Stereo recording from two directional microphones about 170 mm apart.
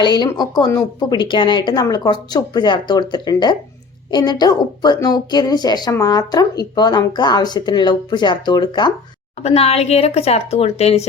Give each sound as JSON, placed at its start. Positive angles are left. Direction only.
{"t": 0.0, "sound": "a woman's voice", "side_deg": 25}
{"t": 9.4, "sound": "speech", "side_deg": 35}